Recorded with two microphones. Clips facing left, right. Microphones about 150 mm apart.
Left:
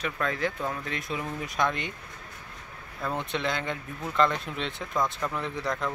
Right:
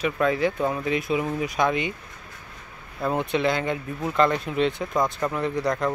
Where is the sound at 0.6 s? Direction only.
20° right (ahead or behind).